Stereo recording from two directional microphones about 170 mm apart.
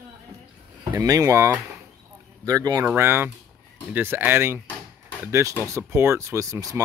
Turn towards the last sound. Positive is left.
turn(degrees=-20)  # may be behind; listen again after turning